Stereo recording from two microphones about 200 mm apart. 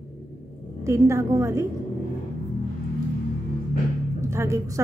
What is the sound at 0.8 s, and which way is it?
Speech, 15° right (ahead or behind).